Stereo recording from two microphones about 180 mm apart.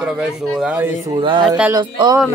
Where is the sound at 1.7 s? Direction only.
25° right (ahead or behind).